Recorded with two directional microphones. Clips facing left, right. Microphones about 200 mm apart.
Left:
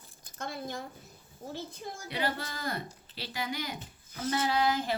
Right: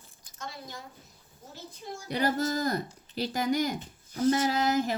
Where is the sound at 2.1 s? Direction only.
45° right (ahead or behind).